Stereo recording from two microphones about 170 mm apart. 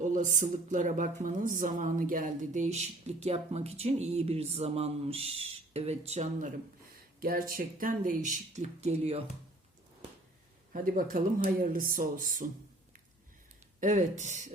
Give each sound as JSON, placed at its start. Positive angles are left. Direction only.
{"t": 0.0, "sound": "speech", "side_deg": -45}
{"t": 6.9, "sound": "speech", "side_deg": -60}
{"t": 10.7, "sound": "speech", "side_deg": -55}
{"t": 13.7, "sound": "speech", "side_deg": -45}